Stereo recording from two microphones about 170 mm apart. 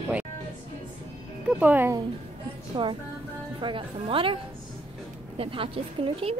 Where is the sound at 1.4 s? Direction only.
10° right (ahead or behind).